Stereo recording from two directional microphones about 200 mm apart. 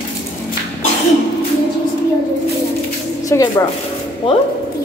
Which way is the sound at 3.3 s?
15° left (ahead or behind).